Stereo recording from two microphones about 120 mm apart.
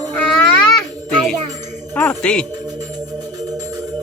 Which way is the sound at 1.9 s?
15° left (ahead or behind).